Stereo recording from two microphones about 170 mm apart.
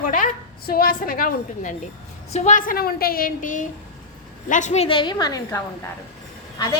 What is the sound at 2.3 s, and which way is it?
A woman's voice, 45° left (ahead or behind).